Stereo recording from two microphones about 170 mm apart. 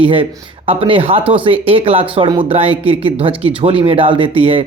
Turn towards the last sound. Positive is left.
turn(degrees=-35)  # may be behind; listen again after turning